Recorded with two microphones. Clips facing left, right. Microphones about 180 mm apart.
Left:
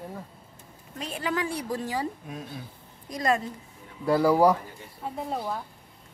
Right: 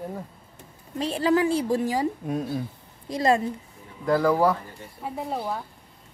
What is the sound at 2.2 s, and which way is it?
Speech, 40° right (ahead or behind).